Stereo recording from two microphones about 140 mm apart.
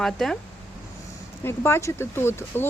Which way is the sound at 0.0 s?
5° left (ahead or behind).